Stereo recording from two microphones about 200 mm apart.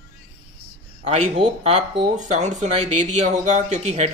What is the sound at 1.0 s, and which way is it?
Speech, 35° right (ahead or behind).